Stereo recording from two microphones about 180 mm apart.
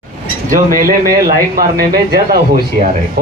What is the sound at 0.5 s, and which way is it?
Speech, 50° right (ahead or behind).